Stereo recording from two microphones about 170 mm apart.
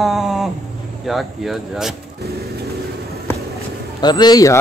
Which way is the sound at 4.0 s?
25° left (ahead or behind).